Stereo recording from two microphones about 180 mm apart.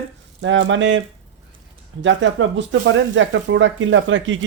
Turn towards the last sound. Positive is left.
turn(degrees=-90)